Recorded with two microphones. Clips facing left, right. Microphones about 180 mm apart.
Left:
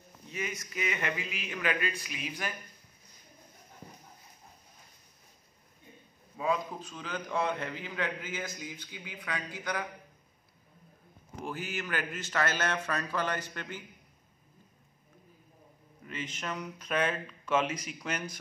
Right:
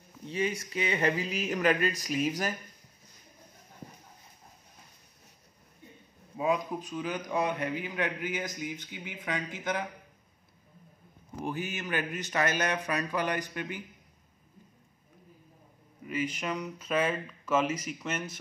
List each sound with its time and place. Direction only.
0.3 s speech: 30° right (ahead or behind)
6.3 s a man's voice: 20° right (ahead or behind)
11.4 s a man's voice: 20° right (ahead or behind)
16.1 s speech: 10° right (ahead or behind)